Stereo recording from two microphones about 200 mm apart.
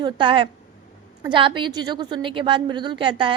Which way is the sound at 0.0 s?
25° right (ahead or behind).